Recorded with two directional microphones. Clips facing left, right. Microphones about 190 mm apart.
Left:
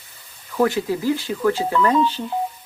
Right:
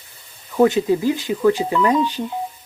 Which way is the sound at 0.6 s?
20° right (ahead or behind).